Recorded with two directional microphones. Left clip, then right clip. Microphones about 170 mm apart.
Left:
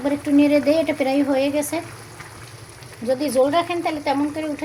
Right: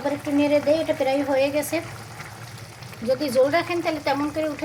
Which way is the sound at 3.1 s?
10° left (ahead or behind).